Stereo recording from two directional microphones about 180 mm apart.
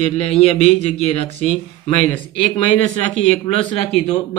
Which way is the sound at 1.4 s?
45° right (ahead or behind).